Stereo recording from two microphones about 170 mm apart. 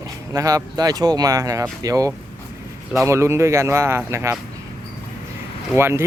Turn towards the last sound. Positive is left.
turn(degrees=-15)  # may be behind; listen again after turning